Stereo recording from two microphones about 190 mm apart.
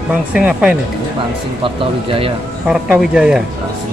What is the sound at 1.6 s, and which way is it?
Speech, 30° right (ahead or behind).